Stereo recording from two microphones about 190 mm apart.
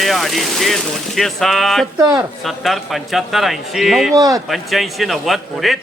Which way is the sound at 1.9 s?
15° right (ahead or behind).